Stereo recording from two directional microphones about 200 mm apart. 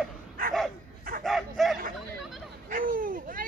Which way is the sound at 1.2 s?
Centre (ahead or behind).